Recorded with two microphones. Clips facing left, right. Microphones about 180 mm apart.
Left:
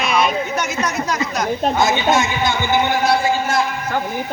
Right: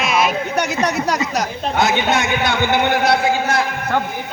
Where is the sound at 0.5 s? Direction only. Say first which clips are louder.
Right 3 dB; 65° right (ahead or behind).